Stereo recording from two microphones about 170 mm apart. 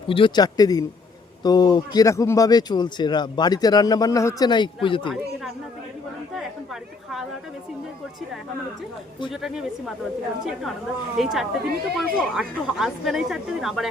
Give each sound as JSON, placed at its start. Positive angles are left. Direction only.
{"t": 0.1, "sound": "speech", "side_deg": 30}
{"t": 9.3, "sound": "speech", "side_deg": 0}